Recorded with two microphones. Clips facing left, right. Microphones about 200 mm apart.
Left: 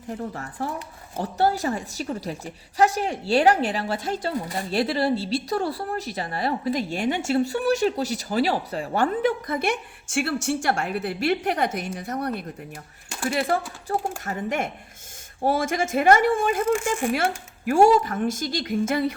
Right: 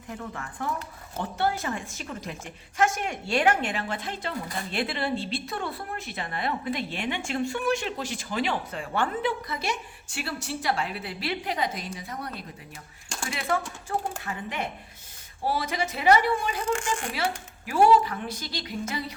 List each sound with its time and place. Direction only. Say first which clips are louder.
0.1 s a woman's voice: left 5 dB; 35° left (ahead or behind); by 12.5 s 65° left (ahead or behind)
13.3 s a woman's voice: left 4 dB; 35° left (ahead or behind); by 19.1 s 50° left (ahead or behind)